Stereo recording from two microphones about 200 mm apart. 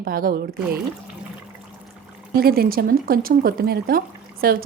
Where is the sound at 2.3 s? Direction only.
50° right (ahead or behind).